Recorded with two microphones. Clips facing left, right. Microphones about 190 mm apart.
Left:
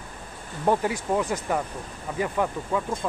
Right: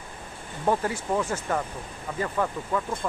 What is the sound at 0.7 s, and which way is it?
Speech, 15° left (ahead or behind).